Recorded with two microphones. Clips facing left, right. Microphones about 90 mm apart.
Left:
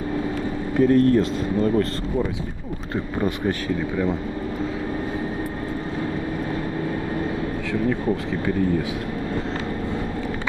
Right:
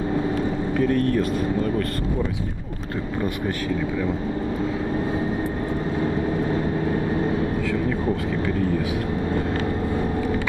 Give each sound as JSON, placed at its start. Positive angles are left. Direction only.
{"t": 0.7, "sound": "speech", "side_deg": 25}